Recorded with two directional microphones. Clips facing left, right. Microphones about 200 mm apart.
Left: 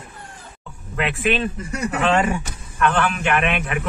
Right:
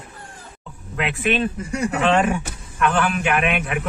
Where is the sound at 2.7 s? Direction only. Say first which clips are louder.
Even; 5° right (ahead or behind).